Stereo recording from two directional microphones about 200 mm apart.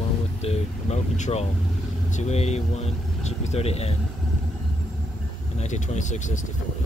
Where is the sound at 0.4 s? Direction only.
30° left (ahead or behind).